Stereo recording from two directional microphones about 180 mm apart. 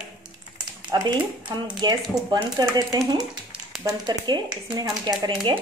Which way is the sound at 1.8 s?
20° right (ahead or behind).